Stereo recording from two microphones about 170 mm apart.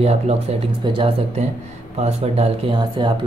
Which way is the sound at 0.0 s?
40° right (ahead or behind).